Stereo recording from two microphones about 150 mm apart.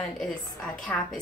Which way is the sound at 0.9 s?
15° left (ahead or behind).